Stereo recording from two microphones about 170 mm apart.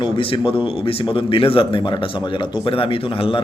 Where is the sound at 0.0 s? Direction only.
30° left (ahead or behind).